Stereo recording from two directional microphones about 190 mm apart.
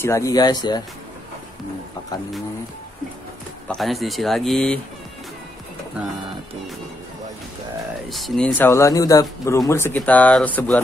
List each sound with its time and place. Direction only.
0.0 s speech: 15° left (ahead or behind)
3.6 s speech: centre (ahead or behind)
8.1 s speech: 5° left (ahead or behind)